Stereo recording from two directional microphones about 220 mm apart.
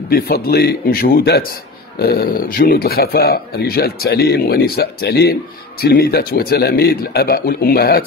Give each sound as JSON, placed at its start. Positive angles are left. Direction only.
{"t": 0.1, "sound": "speech", "side_deg": 45}